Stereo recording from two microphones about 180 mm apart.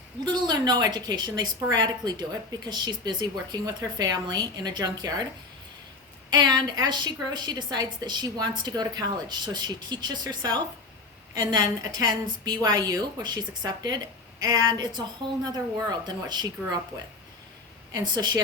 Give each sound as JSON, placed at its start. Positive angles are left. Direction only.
{"t": 0.3, "sound": "a woman's voice", "side_deg": -25}
{"t": 6.3, "sound": "a woman's voice", "side_deg": -20}
{"t": 11.8, "sound": "a woman's voice", "side_deg": -20}
{"t": 17.9, "sound": "a woman's voice", "side_deg": -25}